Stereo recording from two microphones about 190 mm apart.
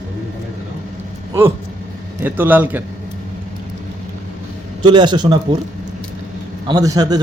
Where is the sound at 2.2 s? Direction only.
10° right (ahead or behind).